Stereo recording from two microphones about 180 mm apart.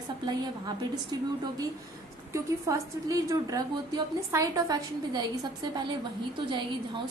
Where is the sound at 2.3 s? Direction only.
15° right (ahead or behind).